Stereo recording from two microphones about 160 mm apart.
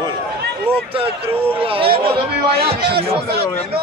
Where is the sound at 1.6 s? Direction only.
35° right (ahead or behind).